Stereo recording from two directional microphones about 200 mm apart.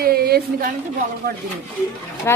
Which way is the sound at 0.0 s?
50° right (ahead or behind).